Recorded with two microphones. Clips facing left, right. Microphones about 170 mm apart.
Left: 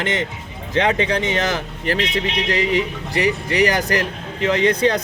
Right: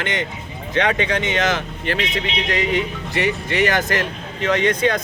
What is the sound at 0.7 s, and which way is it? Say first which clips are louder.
Speech: left 1 dB; 30° left (ahead or behind).